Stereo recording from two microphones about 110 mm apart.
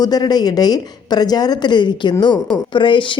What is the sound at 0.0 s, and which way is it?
A woman's voice, 35° left (ahead or behind).